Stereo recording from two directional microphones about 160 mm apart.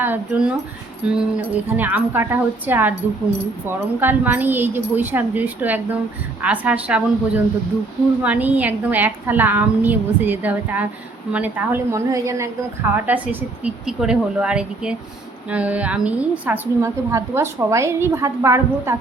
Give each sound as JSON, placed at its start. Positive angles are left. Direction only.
{"t": 0.0, "sound": "a woman's voice", "side_deg": -10}